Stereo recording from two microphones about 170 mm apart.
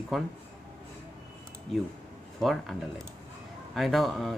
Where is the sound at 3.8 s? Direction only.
Centre (ahead or behind).